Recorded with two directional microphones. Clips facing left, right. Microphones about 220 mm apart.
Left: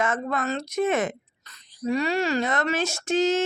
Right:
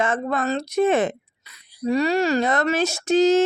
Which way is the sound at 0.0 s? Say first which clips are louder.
Right 3 dB; 30° right (ahead or behind).